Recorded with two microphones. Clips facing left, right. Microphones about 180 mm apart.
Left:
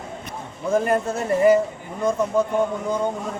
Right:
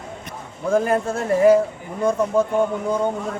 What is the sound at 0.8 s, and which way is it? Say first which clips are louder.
Speech: right 1 dB; centre (ahead or behind).